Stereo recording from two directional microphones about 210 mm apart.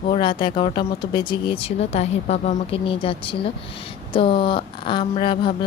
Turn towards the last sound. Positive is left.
turn(degrees=25)  # may be behind; listen again after turning